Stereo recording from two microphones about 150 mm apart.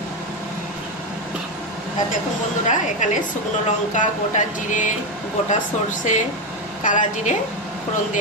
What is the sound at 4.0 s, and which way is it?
A woman's voice, 55° left (ahead or behind).